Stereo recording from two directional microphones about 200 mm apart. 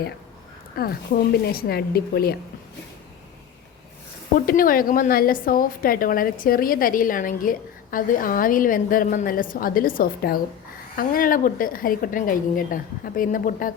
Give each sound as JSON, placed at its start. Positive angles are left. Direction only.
{"t": 0.8, "sound": "a woman's voice", "side_deg": 50}
{"t": 4.4, "sound": "a woman's voice", "side_deg": 45}